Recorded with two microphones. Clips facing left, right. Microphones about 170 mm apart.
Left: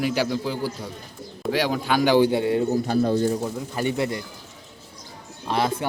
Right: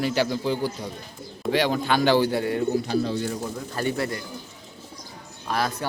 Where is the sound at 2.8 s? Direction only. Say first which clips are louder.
Left 4 dB; 50° left (ahead or behind).